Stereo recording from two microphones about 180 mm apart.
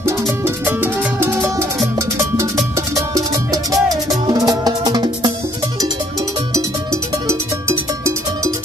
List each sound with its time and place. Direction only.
0.7 s music: 10° right (ahead or behind)
6.5 s cowbell: 15° right (ahead or behind)